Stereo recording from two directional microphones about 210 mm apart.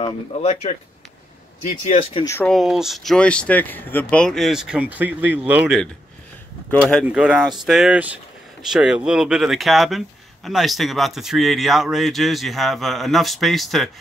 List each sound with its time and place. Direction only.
0.0 s speech: 30° left (ahead or behind)
2.2 s speech: 10° left (ahead or behind)
7.1 s speech: 5° right (ahead or behind)